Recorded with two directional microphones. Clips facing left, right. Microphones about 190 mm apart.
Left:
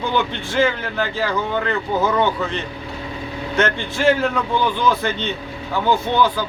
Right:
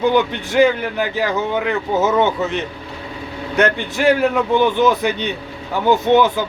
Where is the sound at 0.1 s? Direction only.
15° right (ahead or behind).